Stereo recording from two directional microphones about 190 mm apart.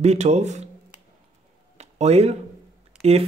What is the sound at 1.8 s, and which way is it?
Speech, 35° right (ahead or behind).